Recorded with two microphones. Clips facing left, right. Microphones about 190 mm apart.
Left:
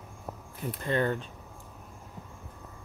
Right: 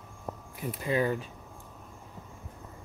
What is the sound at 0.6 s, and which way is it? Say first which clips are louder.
Speech: even; 5° right (ahead or behind).